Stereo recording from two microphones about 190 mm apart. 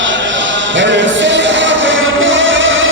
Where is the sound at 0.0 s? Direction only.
80° right.